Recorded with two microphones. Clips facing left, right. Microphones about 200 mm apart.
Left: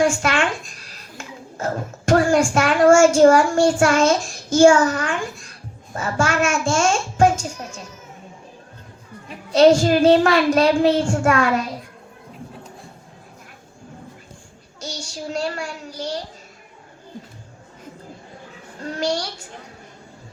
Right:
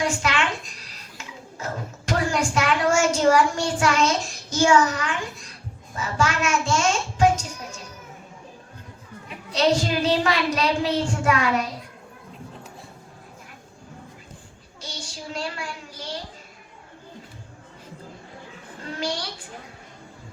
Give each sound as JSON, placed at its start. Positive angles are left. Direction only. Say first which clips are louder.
{"t": 0.0, "sound": "a sound", "louder": "left 5 dB", "side_deg": 50}
{"t": 5.9, "sound": "a woman's voice", "louder": "left 3 dB", "side_deg": 50}
{"t": 9.5, "sound": "a woman's voice", "louder": "left 8 dB", "side_deg": 50}
{"t": 14.8, "sound": "a child's voice", "louder": "left 6 dB", "side_deg": 45}
{"t": 18.9, "sound": "a woman's voice", "louder": "left 6 dB", "side_deg": 45}